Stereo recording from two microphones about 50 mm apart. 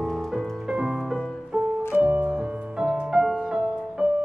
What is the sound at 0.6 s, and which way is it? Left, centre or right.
Music, centre.